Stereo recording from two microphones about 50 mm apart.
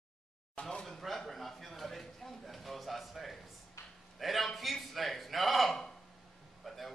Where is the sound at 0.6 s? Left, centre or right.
Centre.